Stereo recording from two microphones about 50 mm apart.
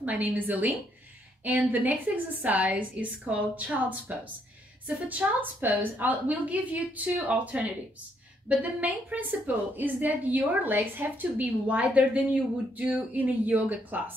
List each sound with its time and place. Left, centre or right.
0.0 s a woman's voice: right
11.6 s speech: right